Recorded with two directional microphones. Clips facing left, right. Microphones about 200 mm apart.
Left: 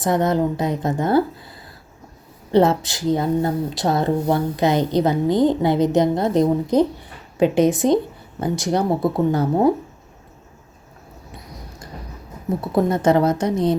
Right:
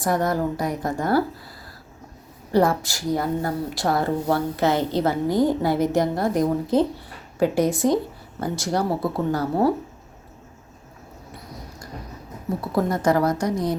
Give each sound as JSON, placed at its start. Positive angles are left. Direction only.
{"t": 0.0, "sound": "a woman's voice", "side_deg": 20}
{"t": 2.5, "sound": "a woman's voice", "side_deg": 25}
{"t": 12.7, "sound": "a woman's voice", "side_deg": 25}